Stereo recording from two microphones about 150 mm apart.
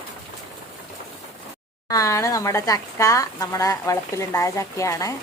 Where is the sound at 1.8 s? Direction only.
20° left (ahead or behind).